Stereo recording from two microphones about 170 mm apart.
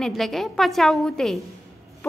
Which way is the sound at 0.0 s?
Centre (ahead or behind).